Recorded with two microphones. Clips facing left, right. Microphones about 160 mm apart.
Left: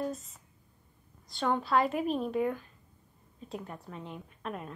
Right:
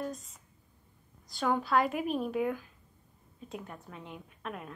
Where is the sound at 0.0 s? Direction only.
Centre (ahead or behind).